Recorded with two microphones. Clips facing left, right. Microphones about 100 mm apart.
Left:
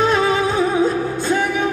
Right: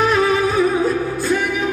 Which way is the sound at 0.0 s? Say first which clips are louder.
Right 1 dB; 25° left (ahead or behind).